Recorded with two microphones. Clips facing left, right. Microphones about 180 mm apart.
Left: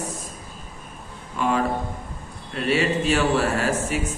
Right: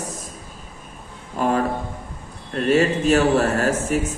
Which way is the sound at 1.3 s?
45° right (ahead or behind).